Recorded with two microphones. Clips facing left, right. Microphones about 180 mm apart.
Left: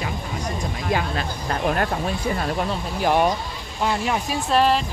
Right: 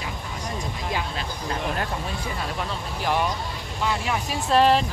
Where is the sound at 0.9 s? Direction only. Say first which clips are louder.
Left 7 dB; 60° left (ahead or behind).